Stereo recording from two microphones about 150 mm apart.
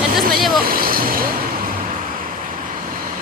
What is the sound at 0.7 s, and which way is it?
Speech, 75° right (ahead or behind).